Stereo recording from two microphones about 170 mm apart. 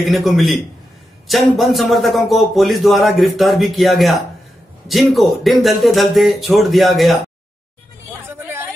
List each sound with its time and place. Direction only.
0.0 s speech: centre (ahead or behind)
8.3 s vehicle: 15° right (ahead or behind)